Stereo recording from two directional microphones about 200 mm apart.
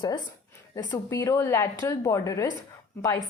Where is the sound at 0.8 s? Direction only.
20° left (ahead or behind).